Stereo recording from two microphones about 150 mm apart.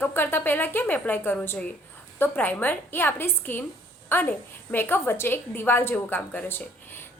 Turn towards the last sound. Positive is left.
turn(degrees=15)  # may be behind; listen again after turning